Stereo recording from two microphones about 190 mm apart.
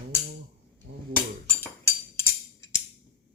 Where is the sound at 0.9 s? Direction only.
55° right (ahead or behind).